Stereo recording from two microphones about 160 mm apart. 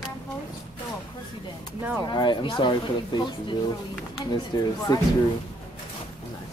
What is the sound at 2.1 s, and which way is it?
Speech, 30° left (ahead or behind).